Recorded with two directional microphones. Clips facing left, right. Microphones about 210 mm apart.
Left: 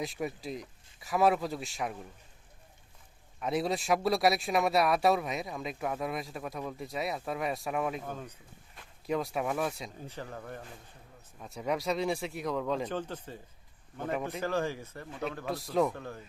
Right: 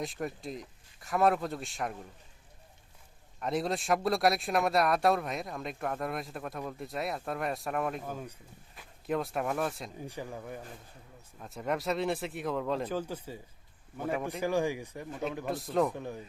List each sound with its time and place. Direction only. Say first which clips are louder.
0.0 s speech: left 1 dB; centre (ahead or behind)
3.4 s speech: left 1 dB; centre (ahead or behind)
10.0 s speech: right 5 dB; 10° right (ahead or behind)
14.4 s speech: right 5 dB; 15° right (ahead or behind)
15.4 s speech: left 1 dB; centre (ahead or behind)
16.0 s speech: right 3 dB; 15° right (ahead or behind)